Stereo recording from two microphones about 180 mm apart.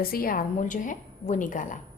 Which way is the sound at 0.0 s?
55° left (ahead or behind).